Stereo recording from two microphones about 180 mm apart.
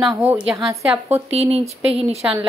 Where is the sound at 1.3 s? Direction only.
35° right (ahead or behind).